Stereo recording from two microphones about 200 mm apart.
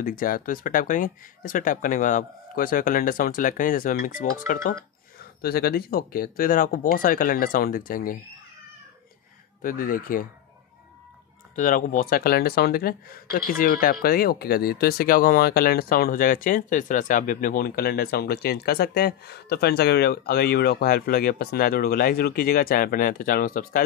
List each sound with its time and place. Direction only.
0.0 s speech: 45° left (ahead or behind)
9.6 s speech: 45° left (ahead or behind)
11.5 s speech: 40° left (ahead or behind)